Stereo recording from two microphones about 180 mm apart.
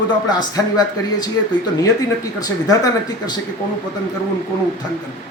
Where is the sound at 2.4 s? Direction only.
20° left (ahead or behind).